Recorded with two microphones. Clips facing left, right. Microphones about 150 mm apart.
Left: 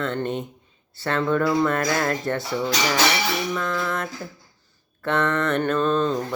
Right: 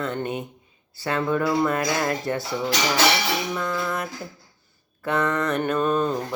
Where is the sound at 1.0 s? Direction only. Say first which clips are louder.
Left 1 dB; 10° right (ahead or behind).